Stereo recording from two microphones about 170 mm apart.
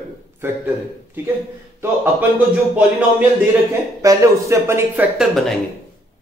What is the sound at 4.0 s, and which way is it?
A man's voice, 20° right (ahead or behind).